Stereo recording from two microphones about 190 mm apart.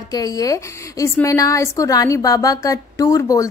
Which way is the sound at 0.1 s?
20° left (ahead or behind).